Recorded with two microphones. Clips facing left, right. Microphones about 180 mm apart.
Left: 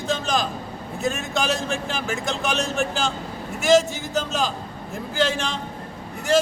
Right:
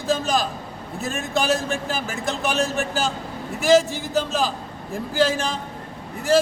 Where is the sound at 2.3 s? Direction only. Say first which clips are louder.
Right 2 dB; centre (ahead or behind).